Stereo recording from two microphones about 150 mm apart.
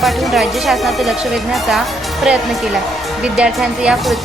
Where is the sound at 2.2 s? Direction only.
Centre (ahead or behind).